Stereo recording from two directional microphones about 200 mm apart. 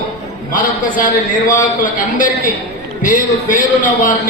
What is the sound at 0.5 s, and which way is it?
A man's voice, 45° left (ahead or behind).